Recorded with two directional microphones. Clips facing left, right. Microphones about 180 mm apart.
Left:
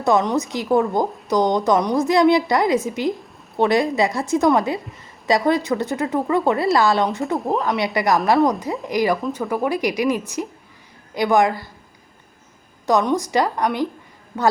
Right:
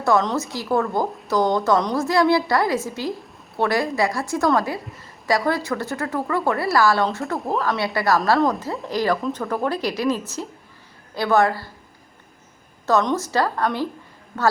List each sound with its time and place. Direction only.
0.0 s a woman's voice: 15° left (ahead or behind)
7.3 s speech: centre (ahead or behind)
7.6 s a woman's voice: 20° left (ahead or behind)
12.8 s a woman's voice: 15° left (ahead or behind)